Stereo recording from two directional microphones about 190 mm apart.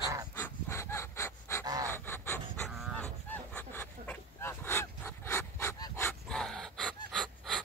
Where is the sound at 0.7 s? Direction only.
15° left (ahead or behind).